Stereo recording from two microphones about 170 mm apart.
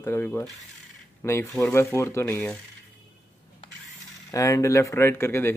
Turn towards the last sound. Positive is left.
turn(degrees=15)  # may be behind; listen again after turning